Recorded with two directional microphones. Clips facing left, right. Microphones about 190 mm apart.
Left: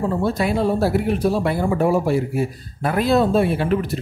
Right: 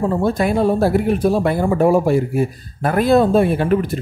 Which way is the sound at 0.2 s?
50° right (ahead or behind).